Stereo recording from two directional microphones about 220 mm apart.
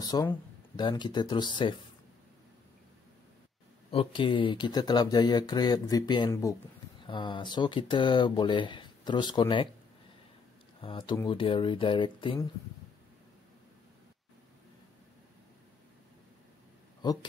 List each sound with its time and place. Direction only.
0.0 s speech: 15° left (ahead or behind)
3.9 s speech: 25° left (ahead or behind)
10.8 s speech: 25° left (ahead or behind)
17.0 s speech: 15° left (ahead or behind)